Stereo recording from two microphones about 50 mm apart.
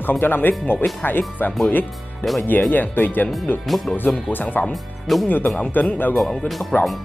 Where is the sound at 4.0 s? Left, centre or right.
Left.